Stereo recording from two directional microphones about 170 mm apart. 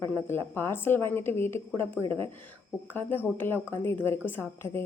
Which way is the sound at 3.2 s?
10° left (ahead or behind).